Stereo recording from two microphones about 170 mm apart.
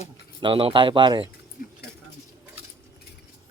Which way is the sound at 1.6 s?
55° left (ahead or behind).